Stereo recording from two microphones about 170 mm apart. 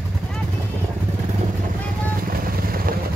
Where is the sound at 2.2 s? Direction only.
60° right (ahead or behind).